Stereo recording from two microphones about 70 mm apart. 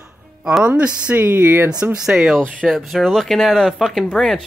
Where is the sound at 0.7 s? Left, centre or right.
Centre.